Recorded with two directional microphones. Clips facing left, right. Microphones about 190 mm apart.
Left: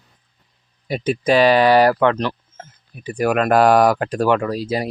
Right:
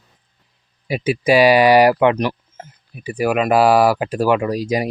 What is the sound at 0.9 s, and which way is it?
Speech, 5° right (ahead or behind).